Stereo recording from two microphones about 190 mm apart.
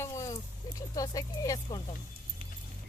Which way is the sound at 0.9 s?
20° left (ahead or behind).